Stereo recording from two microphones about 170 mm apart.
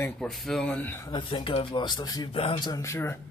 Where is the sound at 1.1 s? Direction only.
30° left (ahead or behind).